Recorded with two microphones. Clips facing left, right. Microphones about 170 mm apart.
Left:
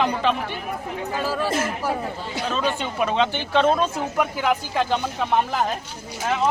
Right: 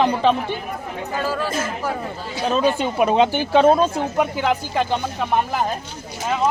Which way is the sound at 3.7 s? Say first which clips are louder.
Right 5 dB; 35° right (ahead or behind).